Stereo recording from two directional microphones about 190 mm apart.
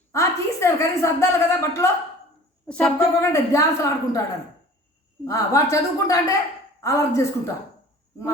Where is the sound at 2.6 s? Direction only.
5° left (ahead or behind).